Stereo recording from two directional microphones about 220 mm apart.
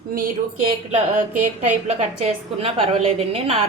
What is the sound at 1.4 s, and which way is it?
A woman's voice, 30° right (ahead or behind).